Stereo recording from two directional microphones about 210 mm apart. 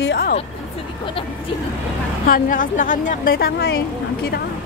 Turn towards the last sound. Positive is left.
turn(degrees=50)  # may be behind; listen again after turning